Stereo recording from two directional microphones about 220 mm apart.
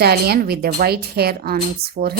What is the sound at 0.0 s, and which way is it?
Speech, 45° right (ahead or behind).